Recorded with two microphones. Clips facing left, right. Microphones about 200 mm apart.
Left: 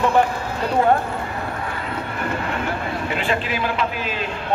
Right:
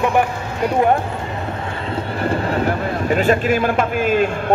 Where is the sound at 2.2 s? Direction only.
35° right (ahead or behind).